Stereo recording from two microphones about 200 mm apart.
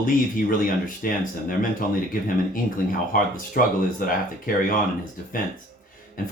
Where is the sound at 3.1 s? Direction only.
45° left (ahead or behind).